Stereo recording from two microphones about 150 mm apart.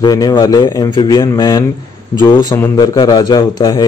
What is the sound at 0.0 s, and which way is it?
Speech, 25° left (ahead or behind).